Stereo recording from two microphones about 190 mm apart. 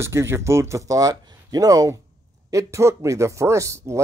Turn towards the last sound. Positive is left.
turn(degrees=-15)  # may be behind; listen again after turning